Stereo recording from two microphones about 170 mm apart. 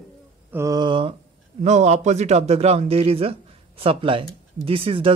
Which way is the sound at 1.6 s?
40° right (ahead or behind).